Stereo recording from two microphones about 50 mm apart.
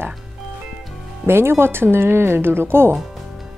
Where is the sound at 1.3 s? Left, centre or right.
Right.